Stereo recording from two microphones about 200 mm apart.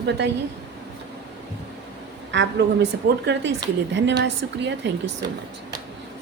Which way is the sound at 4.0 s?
60° right (ahead or behind).